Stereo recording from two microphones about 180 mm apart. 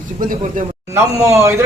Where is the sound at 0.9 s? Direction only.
15° right (ahead or behind).